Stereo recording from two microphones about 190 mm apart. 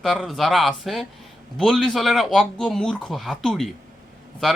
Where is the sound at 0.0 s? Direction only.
Centre (ahead or behind).